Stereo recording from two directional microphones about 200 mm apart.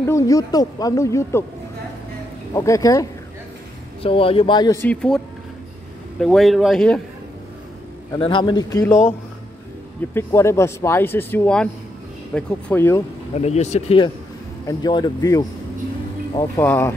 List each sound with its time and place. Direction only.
0.0 s speech: 15° left (ahead or behind)
2.5 s speech: 15° left (ahead or behind)
4.0 s speech: 25° left (ahead or behind)
4.8 s speech: 5° left (ahead or behind)
8.2 s speech: 25° left (ahead or behind)
10.1 s speech: 15° left (ahead or behind)
13.4 s speech: 35° left (ahead or behind); by 16.9 s 10° left (ahead or behind)